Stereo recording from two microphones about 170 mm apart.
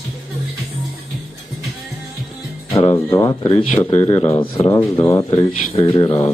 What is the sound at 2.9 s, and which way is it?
Speech, 20° left (ahead or behind).